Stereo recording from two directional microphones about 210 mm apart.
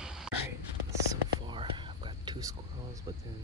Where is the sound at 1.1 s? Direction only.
20° right (ahead or behind).